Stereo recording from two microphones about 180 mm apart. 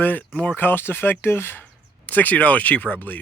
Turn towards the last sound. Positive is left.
turn(degrees=10)  # may be behind; listen again after turning